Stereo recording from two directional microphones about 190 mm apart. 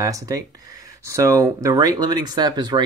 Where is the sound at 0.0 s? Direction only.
20° right (ahead or behind).